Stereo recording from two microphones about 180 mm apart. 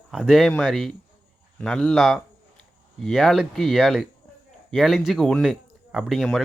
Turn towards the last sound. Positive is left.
turn(degrees=0)  # may be behind; listen again after turning